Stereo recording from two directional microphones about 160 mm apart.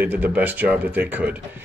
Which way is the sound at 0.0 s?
10° right (ahead or behind).